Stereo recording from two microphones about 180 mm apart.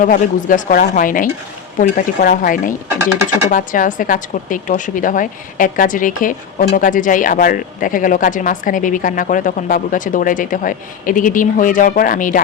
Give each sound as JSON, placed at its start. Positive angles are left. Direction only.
{"t": 0.0, "sound": "a woman's voice", "side_deg": 50}